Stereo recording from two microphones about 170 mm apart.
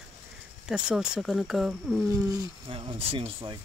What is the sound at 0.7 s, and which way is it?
Speech, 5° right (ahead or behind).